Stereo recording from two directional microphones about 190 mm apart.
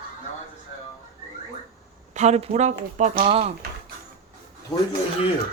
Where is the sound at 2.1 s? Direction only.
35° right (ahead or behind).